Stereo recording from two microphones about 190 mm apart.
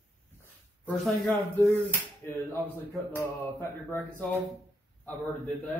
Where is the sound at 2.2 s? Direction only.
10° left (ahead or behind).